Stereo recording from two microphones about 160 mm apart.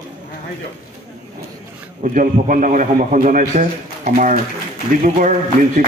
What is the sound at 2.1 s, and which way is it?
A man's voice, 55° right (ahead or behind).